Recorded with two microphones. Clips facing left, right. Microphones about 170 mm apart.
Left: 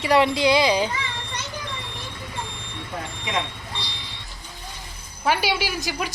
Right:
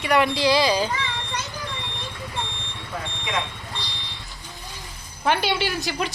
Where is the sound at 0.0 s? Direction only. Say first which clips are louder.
Left 2 dB; 25° left (ahead or behind).